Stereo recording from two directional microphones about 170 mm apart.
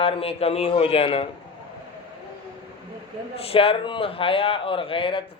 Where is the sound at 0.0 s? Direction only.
35° left (ahead or behind).